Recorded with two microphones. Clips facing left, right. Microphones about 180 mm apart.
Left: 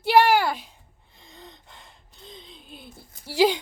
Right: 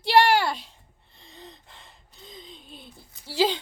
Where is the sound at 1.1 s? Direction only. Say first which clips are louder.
Even; centre (ahead or behind).